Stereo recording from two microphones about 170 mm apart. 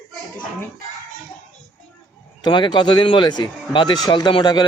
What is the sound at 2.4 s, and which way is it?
Speech, 25° left (ahead or behind).